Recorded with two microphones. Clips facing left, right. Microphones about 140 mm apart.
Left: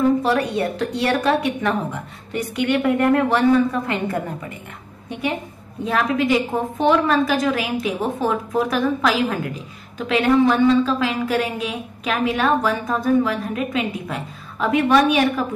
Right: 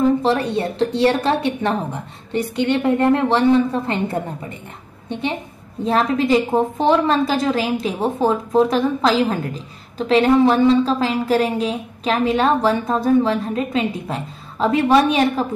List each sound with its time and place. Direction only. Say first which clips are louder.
0.2 s a woman's voice: right 1 dB; 25° right (ahead or behind)
5.9 s a woman's voice: right 2 dB; 30° right (ahead or behind)